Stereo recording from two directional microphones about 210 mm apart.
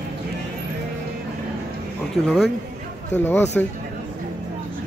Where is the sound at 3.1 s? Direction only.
10° left (ahead or behind).